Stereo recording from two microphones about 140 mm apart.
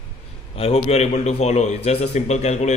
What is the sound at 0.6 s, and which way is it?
A man's voice, 45° left (ahead or behind).